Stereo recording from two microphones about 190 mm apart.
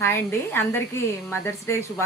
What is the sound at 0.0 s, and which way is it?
A woman's voice, 10° left (ahead or behind).